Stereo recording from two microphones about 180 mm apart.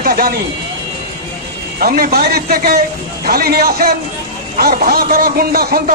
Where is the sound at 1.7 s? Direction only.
55° right (ahead or behind).